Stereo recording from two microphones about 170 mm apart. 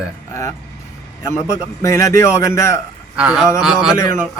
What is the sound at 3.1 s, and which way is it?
Speech, 5° right (ahead or behind).